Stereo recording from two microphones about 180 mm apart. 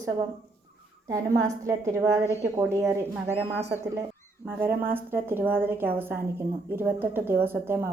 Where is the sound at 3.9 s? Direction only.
15° right (ahead or behind).